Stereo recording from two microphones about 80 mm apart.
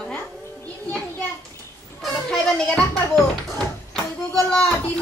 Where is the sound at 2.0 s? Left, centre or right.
Centre.